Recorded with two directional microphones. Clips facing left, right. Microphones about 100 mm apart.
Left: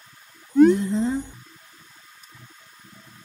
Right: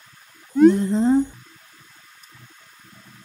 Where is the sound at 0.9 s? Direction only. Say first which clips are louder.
Right 6 dB; 40° right (ahead or behind).